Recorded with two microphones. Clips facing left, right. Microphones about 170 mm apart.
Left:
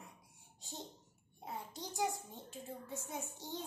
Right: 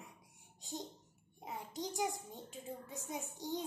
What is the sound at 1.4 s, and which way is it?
A child's voice, 15° right (ahead or behind).